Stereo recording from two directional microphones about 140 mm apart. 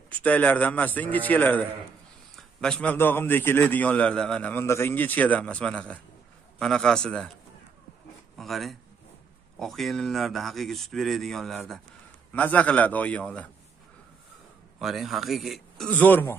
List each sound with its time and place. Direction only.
0.1 s a man's voice: 10° left (ahead or behind)
8.4 s speech: centre (ahead or behind)
12.3 s a man's voice: 10° left (ahead or behind)
14.8 s speech: centre (ahead or behind)
15.9 s a man's voice: 15° left (ahead or behind)